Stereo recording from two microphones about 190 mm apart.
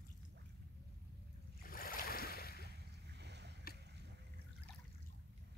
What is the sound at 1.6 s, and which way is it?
Waves, 50° left (ahead or behind).